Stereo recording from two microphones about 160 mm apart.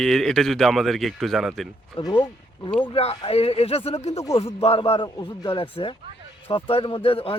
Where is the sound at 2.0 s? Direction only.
30° left (ahead or behind).